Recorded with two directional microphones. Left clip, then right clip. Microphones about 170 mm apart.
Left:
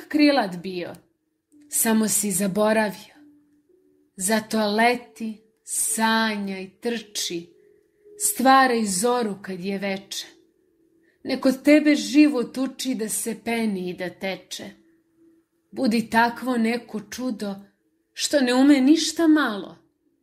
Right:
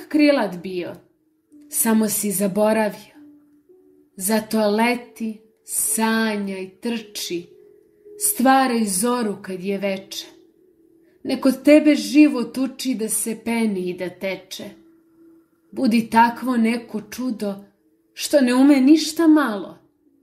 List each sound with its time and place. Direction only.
0.1 s speech: 30° left (ahead or behind)
8.4 s speech: 35° left (ahead or behind)
15.7 s speech: 30° left (ahead or behind)